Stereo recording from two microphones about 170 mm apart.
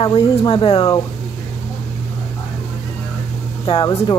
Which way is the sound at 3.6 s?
30° left (ahead or behind).